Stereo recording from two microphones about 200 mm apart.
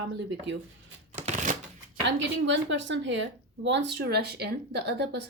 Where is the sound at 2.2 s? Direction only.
65° right (ahead or behind).